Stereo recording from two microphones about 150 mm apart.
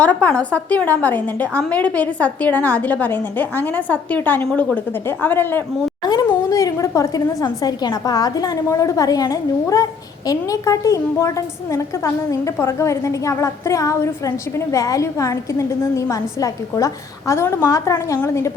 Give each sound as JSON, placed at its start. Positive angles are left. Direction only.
{"t": 0.0, "sound": "a woman's voice", "side_deg": 10}